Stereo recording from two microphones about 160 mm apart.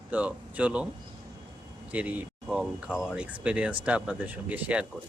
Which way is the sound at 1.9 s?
10° right (ahead or behind).